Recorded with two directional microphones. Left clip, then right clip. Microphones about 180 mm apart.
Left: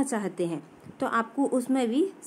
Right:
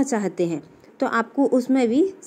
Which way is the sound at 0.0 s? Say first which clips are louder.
Right 6 dB; 15° right (ahead or behind).